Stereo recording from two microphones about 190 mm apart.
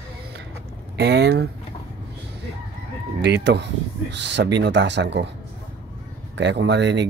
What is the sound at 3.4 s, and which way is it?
Speech, 65° right (ahead or behind).